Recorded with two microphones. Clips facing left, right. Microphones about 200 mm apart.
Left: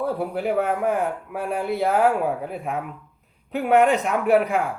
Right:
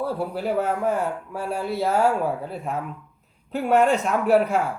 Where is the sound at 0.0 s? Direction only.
15° left (ahead or behind).